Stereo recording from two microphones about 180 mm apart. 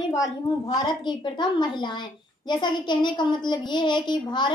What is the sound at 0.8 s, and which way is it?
A woman's voice, 25° left (ahead or behind).